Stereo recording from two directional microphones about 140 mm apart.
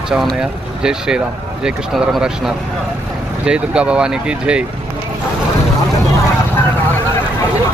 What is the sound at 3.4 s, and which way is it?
Speech, 10° right (ahead or behind).